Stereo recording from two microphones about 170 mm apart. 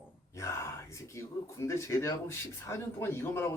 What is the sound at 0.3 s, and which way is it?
Speech, 15° left (ahead or behind).